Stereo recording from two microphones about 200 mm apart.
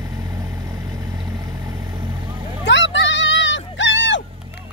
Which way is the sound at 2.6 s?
65° left (ahead or behind).